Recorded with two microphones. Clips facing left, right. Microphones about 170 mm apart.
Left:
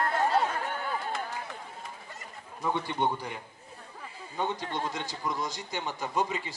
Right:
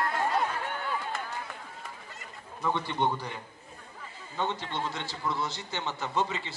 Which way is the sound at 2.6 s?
10° left (ahead or behind).